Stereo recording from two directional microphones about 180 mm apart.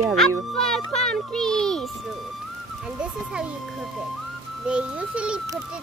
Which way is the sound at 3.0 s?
5° right (ahead or behind).